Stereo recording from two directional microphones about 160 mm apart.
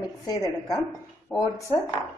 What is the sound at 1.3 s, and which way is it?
Speech, 20° left (ahead or behind).